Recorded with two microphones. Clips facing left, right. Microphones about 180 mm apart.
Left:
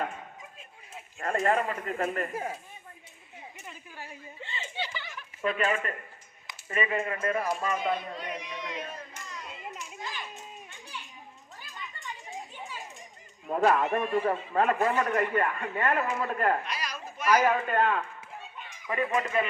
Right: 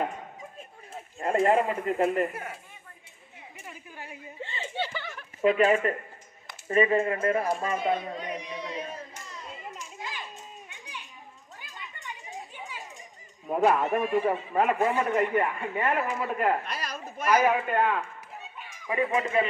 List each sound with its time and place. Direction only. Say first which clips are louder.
1.2 s speech: right 4 dB; 25° right (ahead or behind)
2.3 s speech: left 4 dB; 25° left (ahead or behind)
3.7 s a woman's voice: right 3 dB; 15° right (ahead or behind)
4.4 s speech: right 4 dB; 50° right (ahead or behind)
4.7 s a sound: right 4 dB; 55° right (ahead or behind)
5.4 s speech: right 7 dB; 20° right (ahead or behind)
7.9 s speech: right 3 dB; 45° right (ahead or behind)
9.5 s children playing: right 2 dB; centre (ahead or behind)
10.7 s children playing: even; 15° right (ahead or behind)
12.5 s children playing: even; 10° right (ahead or behind)
13.5 s a man's voice: right 1 dB; 10° right (ahead or behind)
16.6 s children playing: right 1 dB; 55° right (ahead or behind)
17.4 s a man's voice: right 1 dB; 15° right (ahead or behind)